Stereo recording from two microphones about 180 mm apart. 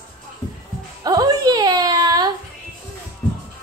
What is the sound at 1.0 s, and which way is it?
Whimper, 20° right (ahead or behind).